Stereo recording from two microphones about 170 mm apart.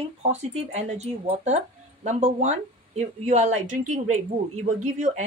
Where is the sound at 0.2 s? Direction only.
40° right (ahead or behind).